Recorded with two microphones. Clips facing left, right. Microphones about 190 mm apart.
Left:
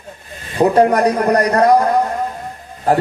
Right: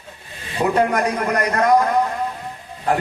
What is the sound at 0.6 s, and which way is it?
A man's voice, 35° left (ahead or behind).